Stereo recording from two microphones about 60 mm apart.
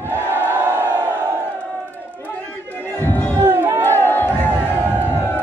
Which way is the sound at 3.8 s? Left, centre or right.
Left.